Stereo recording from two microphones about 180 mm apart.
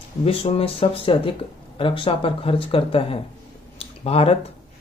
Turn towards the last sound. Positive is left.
turn(degrees=35)  # may be behind; listen again after turning